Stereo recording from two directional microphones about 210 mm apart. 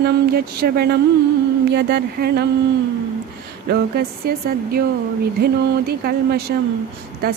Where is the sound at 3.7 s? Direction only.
50° right (ahead or behind).